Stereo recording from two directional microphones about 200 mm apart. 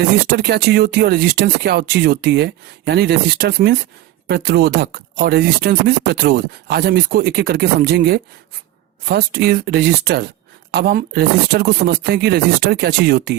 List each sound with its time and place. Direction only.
0.3 s speech: 50° right (ahead or behind)